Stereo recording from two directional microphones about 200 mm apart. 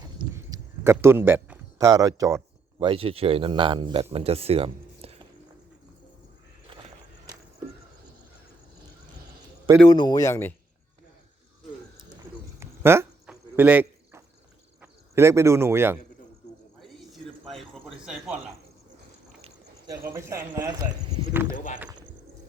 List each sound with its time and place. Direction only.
0.3 s speech: 15° right (ahead or behind); by 5.2 s 30° right (ahead or behind)
9.9 s a man's voice: 20° left (ahead or behind)
12.5 s cricket: 10° right (ahead or behind)
14.8 s speech: 15° right (ahead or behind)
16.8 s a sound: centre (ahead or behind)
18.0 s speech: 5° right (ahead or behind)
20.1 s speech: 15° right (ahead or behind)
21.5 s speech: 40° left (ahead or behind)